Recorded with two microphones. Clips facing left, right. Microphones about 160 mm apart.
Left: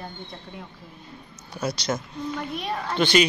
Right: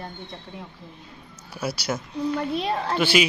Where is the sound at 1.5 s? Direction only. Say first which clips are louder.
Left 1 dB; 10° right (ahead or behind).